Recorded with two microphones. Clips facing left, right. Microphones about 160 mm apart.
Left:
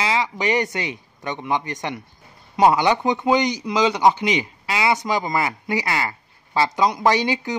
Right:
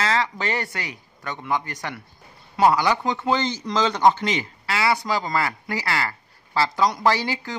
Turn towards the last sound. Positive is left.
turn(degrees=20)  # may be behind; listen again after turning